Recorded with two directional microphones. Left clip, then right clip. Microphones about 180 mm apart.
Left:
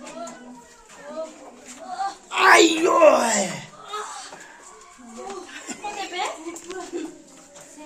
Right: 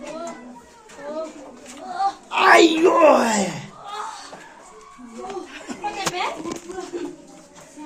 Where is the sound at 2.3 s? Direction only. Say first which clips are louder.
Right 1 dB; centre (ahead or behind).